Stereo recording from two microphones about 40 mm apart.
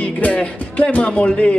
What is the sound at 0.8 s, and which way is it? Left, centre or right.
Speech, left.